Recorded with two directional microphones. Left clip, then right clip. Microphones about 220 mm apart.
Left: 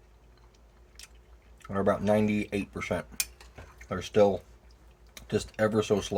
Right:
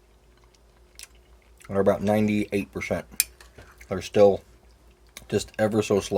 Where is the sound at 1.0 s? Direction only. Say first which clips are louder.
Right 4 dB; 45° right (ahead or behind).